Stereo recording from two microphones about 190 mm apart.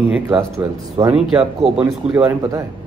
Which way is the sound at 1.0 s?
15° right (ahead or behind).